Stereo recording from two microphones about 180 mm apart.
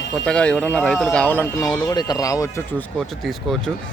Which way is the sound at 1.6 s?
20° left (ahead or behind).